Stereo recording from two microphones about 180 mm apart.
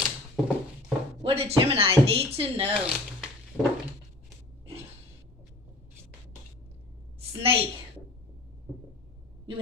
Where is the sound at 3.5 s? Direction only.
5° right (ahead or behind).